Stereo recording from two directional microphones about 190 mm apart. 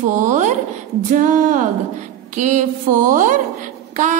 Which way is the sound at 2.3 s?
40° right (ahead or behind).